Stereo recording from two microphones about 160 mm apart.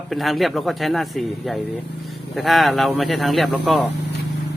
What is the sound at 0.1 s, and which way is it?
Speech, centre (ahead or behind).